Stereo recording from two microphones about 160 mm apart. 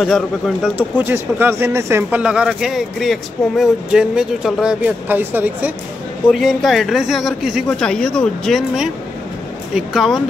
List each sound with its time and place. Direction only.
0.0 s a woman's voice: centre (ahead or behind)
0.9 s speech: 15° right (ahead or behind)
6.3 s a woman's voice: centre (ahead or behind)